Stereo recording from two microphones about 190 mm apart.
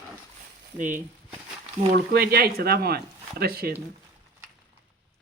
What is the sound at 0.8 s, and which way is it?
Speech, 45° right (ahead or behind).